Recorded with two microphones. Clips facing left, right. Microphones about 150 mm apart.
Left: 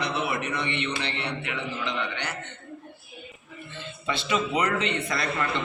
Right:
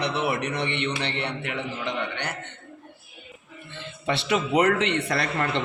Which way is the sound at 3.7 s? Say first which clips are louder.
Right 4 dB; 70° right (ahead or behind).